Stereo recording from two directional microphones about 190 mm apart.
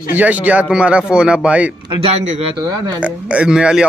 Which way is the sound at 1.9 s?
30° right (ahead or behind).